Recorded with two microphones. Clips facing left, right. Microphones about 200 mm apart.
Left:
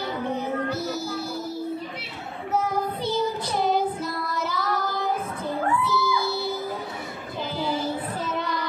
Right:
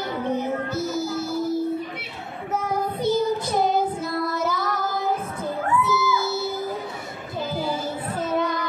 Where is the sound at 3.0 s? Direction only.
45° right (ahead or behind).